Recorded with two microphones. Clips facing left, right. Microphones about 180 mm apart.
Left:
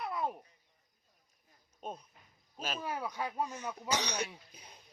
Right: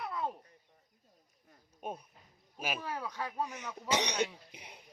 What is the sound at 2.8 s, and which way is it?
Speech, 10° left (ahead or behind).